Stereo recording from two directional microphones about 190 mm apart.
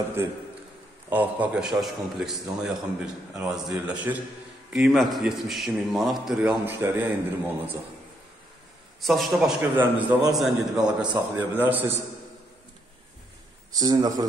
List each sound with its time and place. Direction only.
1.1 s a man's voice: 10° right (ahead or behind)
9.0 s a man's voice: centre (ahead or behind)
13.7 s a man's voice: 20° right (ahead or behind)